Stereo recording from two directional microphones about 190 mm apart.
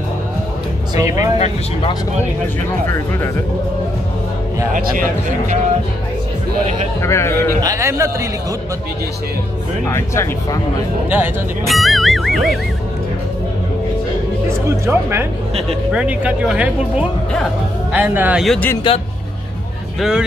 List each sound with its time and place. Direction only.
0.9 s speech: 15° right (ahead or behind)
1.4 s speech: 30° left (ahead or behind)
2.4 s speech: 10° left (ahead or behind)
4.7 s speech: 45° right (ahead or behind)
7.0 s speech: 15° left (ahead or behind)
7.6 s speech: 15° right (ahead or behind)
9.8 s speech: 15° left (ahead or behind)
11.1 s speech: 5° right (ahead or behind)
14.9 s speech: 15° right (ahead or behind)
20.0 s speech: 5° right (ahead or behind)